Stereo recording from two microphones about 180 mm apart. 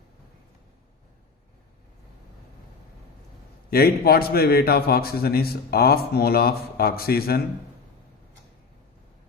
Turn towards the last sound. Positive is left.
turn(degrees=60)  # may be behind; listen again after turning